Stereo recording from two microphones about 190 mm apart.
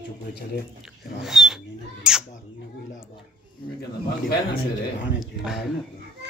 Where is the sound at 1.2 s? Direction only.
Centre (ahead or behind).